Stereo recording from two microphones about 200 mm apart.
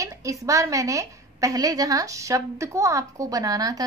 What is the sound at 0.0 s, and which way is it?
A woman's voice, 15° right (ahead or behind).